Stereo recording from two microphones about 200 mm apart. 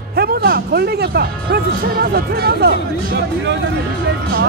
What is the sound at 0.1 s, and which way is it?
Speech, 50° right (ahead or behind).